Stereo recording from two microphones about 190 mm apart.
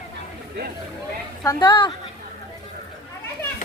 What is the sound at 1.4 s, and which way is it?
Speech, 25° left (ahead or behind).